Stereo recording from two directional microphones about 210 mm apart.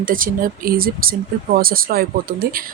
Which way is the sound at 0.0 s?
40° right (ahead or behind).